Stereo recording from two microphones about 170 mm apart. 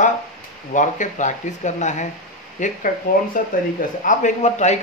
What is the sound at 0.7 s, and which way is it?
Speech, 45° left (ahead or behind).